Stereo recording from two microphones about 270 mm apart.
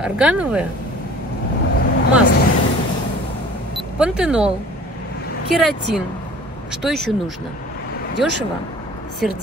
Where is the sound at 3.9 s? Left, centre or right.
Centre.